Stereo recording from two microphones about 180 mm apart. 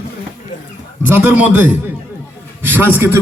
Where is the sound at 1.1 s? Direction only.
10° right (ahead or behind).